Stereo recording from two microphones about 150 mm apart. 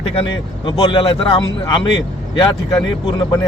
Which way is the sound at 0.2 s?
35° left (ahead or behind).